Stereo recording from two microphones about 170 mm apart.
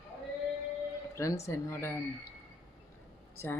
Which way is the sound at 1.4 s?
15° left (ahead or behind).